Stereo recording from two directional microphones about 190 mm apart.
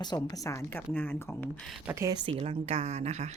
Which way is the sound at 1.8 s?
15° right (ahead or behind).